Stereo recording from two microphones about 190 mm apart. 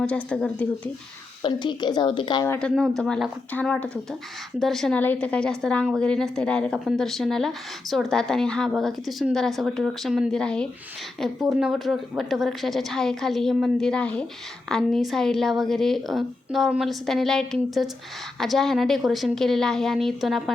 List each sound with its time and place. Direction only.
0.0 s a woman's voice: 5° left (ahead or behind)
1.4 s speech: 25° left (ahead or behind)
2.5 s a woman's voice: 5° left (ahead or behind)